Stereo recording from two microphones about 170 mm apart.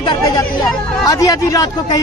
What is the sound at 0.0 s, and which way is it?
Chatter, 30° left (ahead or behind).